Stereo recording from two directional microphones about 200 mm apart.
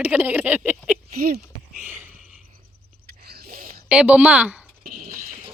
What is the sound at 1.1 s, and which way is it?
Speech, 50° right (ahead or behind).